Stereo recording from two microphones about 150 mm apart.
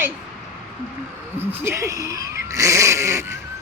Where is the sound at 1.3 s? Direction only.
15° right (ahead or behind).